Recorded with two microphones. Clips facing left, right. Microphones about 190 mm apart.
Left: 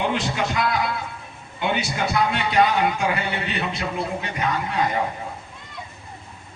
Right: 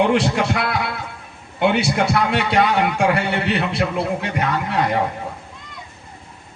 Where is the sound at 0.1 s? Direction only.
80° right.